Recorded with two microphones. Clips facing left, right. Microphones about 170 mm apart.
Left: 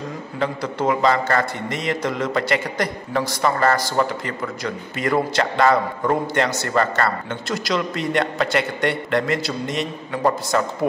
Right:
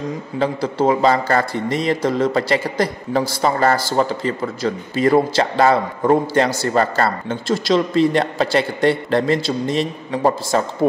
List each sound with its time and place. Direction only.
0.4 s a man's voice: 30° right (ahead or behind)